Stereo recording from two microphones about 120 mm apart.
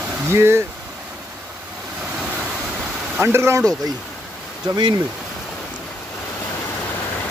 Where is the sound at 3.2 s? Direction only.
20° right (ahead or behind).